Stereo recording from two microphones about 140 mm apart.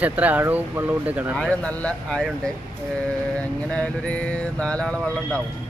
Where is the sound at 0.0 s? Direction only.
10° right (ahead or behind).